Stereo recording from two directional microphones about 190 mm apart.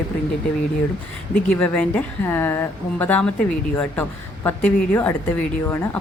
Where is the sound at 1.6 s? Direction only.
10° left (ahead or behind).